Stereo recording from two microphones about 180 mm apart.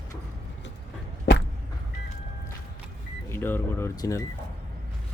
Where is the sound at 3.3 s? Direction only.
10° left (ahead or behind).